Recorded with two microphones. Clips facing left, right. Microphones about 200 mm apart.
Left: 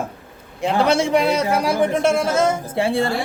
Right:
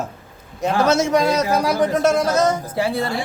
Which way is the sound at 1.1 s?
25° left (ahead or behind).